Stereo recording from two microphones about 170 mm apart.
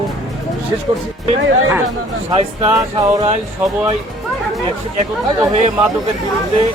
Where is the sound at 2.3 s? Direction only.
30° right (ahead or behind).